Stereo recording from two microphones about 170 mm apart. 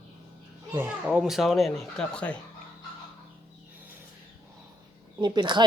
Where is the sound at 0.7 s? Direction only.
15° right (ahead or behind).